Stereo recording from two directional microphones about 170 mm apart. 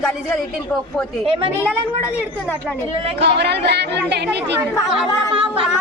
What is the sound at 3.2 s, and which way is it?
Speech, 80° right.